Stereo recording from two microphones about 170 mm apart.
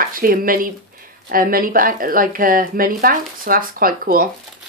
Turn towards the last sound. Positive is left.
turn(degrees=-55)  # may be behind; listen again after turning